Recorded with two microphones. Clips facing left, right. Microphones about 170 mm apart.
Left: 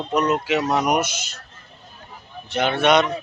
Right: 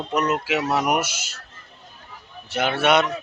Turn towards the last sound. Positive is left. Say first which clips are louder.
# left 2 dB
turn(degrees=-5)  # may be behind; listen again after turning